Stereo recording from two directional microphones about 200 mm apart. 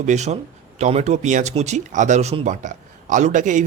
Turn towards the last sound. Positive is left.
turn(degrees=-40)  # may be behind; listen again after turning